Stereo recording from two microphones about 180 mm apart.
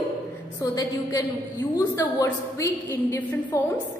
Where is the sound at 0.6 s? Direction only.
20° left (ahead or behind).